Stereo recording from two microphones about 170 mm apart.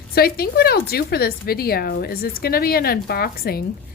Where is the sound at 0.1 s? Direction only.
65° left (ahead or behind).